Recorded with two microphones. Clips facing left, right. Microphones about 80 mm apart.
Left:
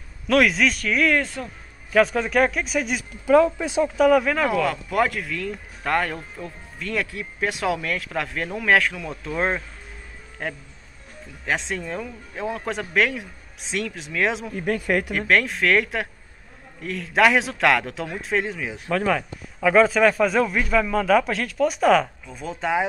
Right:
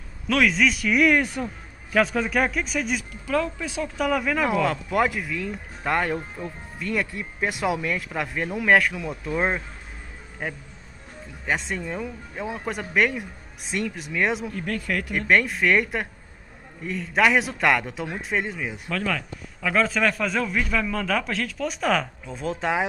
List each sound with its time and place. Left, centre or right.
0.3 s speech: centre
1.9 s speech: centre
3.3 s speech: left
3.9 s speech: centre
4.5 s speech: right
14.7 s speech: left
15.1 s speech: centre
18.9 s a man's voice: left